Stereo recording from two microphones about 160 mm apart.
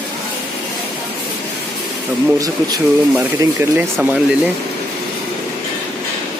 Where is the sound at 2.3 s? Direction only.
20° right (ahead or behind).